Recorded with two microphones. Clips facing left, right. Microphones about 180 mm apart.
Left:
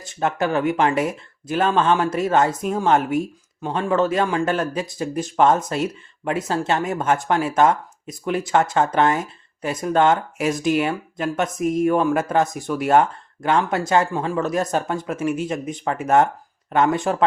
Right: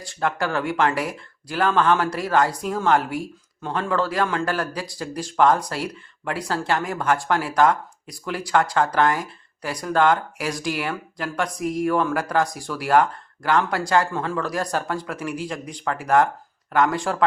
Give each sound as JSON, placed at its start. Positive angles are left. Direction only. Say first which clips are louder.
{"t": 0.1, "sound": "speech", "louder": "left 3 dB", "side_deg": 20}